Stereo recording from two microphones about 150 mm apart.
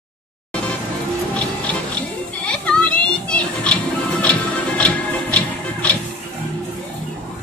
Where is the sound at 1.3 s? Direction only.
10° left (ahead or behind).